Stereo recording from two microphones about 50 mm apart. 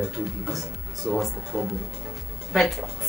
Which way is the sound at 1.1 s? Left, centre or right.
Centre.